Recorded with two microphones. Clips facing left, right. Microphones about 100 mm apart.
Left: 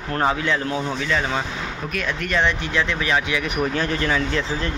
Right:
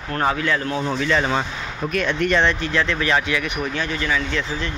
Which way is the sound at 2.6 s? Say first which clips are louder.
Right 2 dB; 15° left (ahead or behind).